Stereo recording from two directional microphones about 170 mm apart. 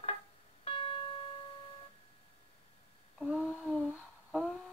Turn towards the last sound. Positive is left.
turn(degrees=-5)  # may be behind; listen again after turning